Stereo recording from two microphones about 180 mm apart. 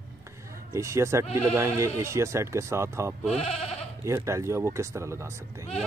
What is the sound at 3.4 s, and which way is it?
Goat, 35° left (ahead or behind).